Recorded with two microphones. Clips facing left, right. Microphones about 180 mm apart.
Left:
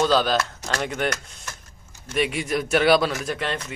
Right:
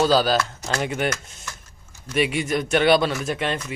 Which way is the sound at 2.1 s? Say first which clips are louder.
Right 2 dB; centre (ahead or behind).